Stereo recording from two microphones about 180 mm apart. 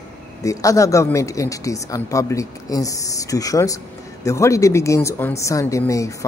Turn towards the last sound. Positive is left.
turn(degrees=15)  # may be behind; listen again after turning